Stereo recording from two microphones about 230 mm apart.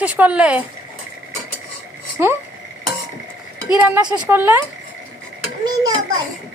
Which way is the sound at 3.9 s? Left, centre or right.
Centre.